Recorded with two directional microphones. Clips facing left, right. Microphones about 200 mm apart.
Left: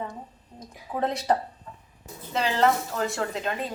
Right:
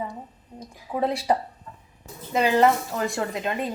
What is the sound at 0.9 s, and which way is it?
A woman's voice, centre (ahead or behind).